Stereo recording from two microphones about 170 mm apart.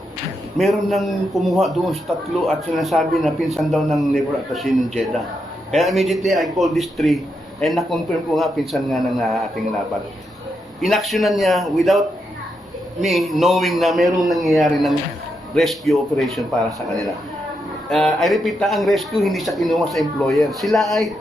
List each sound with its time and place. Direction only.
0.6 s a man's voice: centre (ahead or behind)
10.8 s a man's voice: centre (ahead or behind)